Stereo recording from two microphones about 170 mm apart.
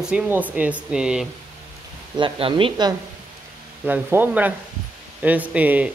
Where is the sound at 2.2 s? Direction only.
30° right (ahead or behind).